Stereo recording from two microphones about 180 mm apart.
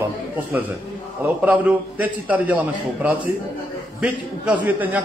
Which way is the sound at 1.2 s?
10° right (ahead or behind).